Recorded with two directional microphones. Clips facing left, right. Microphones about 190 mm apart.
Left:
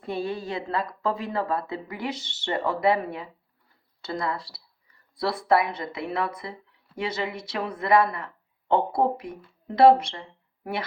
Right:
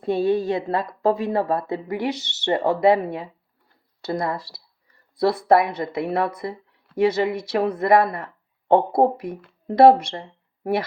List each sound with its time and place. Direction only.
0.0 s speech: 45° right (ahead or behind)
2.1 s speech: 80° right
2.6 s a woman's voice: 40° right (ahead or behind)
5.5 s a woman's voice: 45° right (ahead or behind)